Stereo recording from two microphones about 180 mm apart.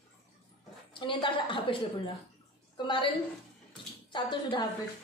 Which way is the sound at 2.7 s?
25° left (ahead or behind).